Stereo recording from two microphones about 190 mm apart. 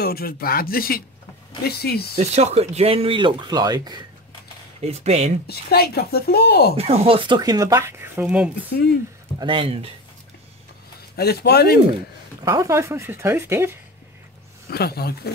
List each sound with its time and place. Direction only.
0.0 s a woman's voice: 50° left (ahead or behind)
2.1 s speech: 35° right (ahead or behind)
4.8 s speech: 35° right (ahead or behind)
5.5 s a woman's voice: 55° left (ahead or behind)
6.8 s speech: 30° right (ahead or behind); by 8.5 s 5° right (ahead or behind)
9.4 s speech: 25° right (ahead or behind)
11.1 s a woman's voice: 55° left (ahead or behind)
12.4 s speech: 20° right (ahead or behind)
14.7 s a woman's voice: 55° left (ahead or behind)